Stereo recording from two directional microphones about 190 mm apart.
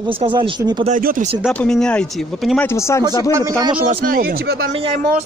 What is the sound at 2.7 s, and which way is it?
Speech, 15° left (ahead or behind).